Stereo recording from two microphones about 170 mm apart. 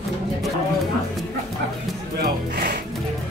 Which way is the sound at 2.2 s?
75° right (ahead or behind).